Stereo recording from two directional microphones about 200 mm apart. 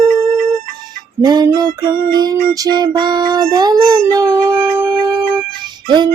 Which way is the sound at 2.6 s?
20° right (ahead or behind).